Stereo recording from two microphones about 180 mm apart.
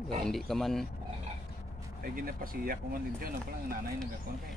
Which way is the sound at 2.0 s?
50° right (ahead or behind).